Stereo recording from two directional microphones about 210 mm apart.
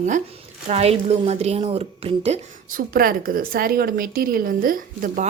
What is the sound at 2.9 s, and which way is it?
A woman's voice, 45° right (ahead or behind).